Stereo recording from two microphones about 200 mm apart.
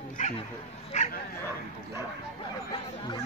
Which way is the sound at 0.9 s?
35° left (ahead or behind).